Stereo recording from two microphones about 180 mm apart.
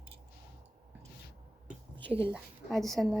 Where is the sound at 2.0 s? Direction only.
30° right (ahead or behind).